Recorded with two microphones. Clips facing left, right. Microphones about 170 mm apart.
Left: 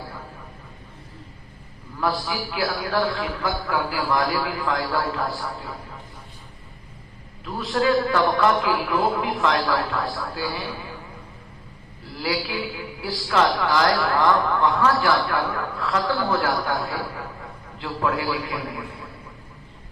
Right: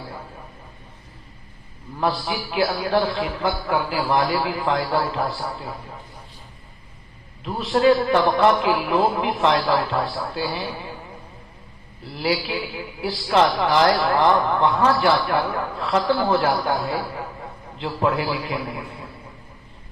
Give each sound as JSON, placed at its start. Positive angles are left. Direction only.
{"t": 2.0, "sound": "a man's voice", "side_deg": -25}
{"t": 7.4, "sound": "a man's voice", "side_deg": -25}
{"t": 12.1, "sound": "a man's voice", "side_deg": -25}